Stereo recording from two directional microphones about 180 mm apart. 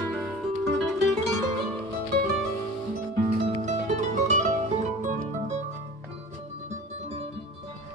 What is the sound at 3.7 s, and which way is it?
Music, 40° right (ahead or behind).